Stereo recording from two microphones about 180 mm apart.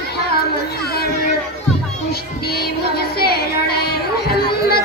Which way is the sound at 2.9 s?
60° left (ahead or behind).